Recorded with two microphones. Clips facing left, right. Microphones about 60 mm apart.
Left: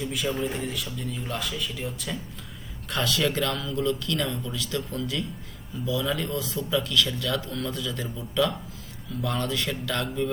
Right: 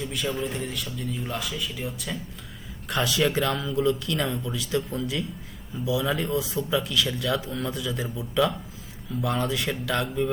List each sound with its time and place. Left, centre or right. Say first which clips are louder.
0.0 s speech: left 1 dB; centre